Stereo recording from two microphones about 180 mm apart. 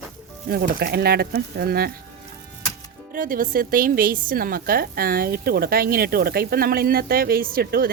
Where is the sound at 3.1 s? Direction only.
50° right (ahead or behind).